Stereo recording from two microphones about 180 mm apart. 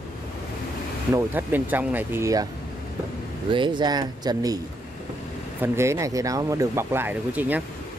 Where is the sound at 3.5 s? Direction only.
25° right (ahead or behind).